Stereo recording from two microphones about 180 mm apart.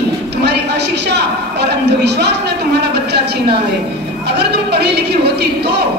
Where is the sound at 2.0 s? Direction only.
70° right (ahead or behind).